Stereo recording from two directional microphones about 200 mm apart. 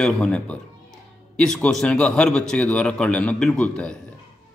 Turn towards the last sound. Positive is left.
turn(degrees=5)  # may be behind; listen again after turning